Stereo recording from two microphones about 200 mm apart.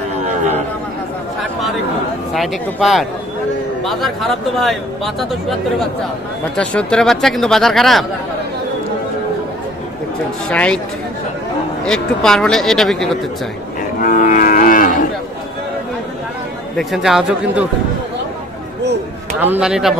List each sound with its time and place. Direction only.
2.3 s speech: centre (ahead or behind)
10.5 s speech: 5° left (ahead or behind)
11.8 s speech: 5° left (ahead or behind)
14.0 s livestock: 45° left (ahead or behind)
16.7 s speech: centre (ahead or behind)
19.4 s speech: 5° right (ahead or behind)